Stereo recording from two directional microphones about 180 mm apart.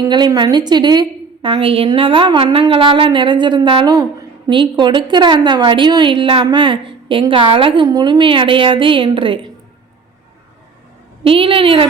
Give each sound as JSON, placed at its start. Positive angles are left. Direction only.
{"t": 0.0, "sound": "a woman's voice", "side_deg": -20}
{"t": 11.2, "sound": "a woman's voice", "side_deg": -30}